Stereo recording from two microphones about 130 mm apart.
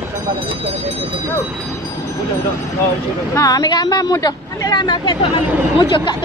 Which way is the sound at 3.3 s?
30° left (ahead or behind).